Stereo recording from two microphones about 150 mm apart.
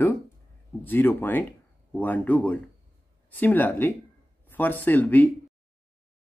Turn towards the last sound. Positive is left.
turn(degrees=10)  # may be behind; listen again after turning